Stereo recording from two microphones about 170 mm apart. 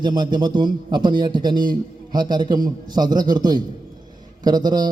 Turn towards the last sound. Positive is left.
turn(degrees=-25)  # may be behind; listen again after turning